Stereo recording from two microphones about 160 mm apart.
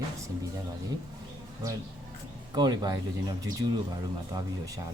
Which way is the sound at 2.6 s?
25° right (ahead or behind).